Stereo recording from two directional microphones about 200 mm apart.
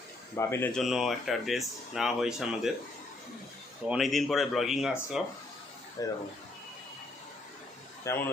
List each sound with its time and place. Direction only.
0.3 s speech: 10° left (ahead or behind)
0.8 s speech: centre (ahead or behind)
3.8 s speech: centre (ahead or behind)
6.0 s speech: 15° left (ahead or behind)
8.0 s speech: 10° left (ahead or behind)